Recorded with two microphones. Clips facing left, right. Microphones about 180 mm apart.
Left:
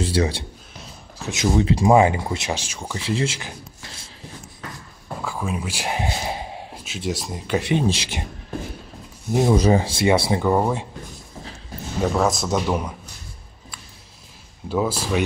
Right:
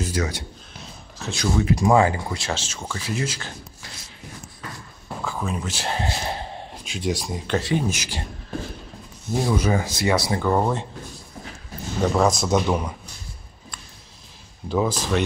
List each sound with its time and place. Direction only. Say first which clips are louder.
0.0 s a man's voice: left 4 dB; 30° left (ahead or behind); by 3.0 s 15° left (ahead or behind)
3.0 s speech: left 4 dB; 25° left (ahead or behind)
5.2 s speech: left 1 dB; 10° left (ahead or behind)
7.6 s speech: left 3 dB; 25° left (ahead or behind)
9.3 s speech: left 5 dB; 20° left (ahead or behind)
10.4 s speech: left 1 dB; 10° left (ahead or behind)
12.0 s a man's voice: right 1 dB; centre (ahead or behind)
14.7 s speech: even; 5° left (ahead or behind)